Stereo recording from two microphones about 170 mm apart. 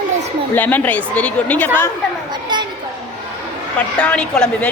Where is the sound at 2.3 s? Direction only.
25° right (ahead or behind).